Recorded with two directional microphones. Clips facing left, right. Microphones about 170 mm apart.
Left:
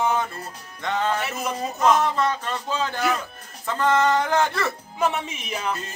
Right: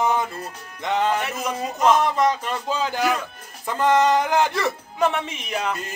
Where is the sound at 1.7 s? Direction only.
15° right (ahead or behind).